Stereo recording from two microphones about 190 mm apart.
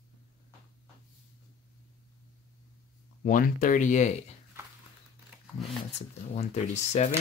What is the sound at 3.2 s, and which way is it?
Speech, 45° left (ahead or behind).